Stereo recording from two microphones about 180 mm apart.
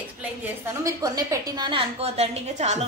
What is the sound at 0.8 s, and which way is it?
A woman's voice, 20° right (ahead or behind).